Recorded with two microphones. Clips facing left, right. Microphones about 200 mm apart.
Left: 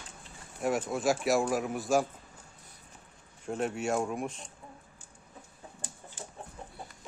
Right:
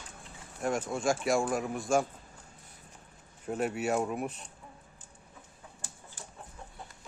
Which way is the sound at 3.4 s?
5° right (ahead or behind).